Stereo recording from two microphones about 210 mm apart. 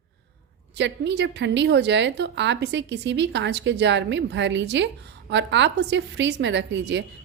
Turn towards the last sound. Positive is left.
turn(degrees=-55)  # may be behind; listen again after turning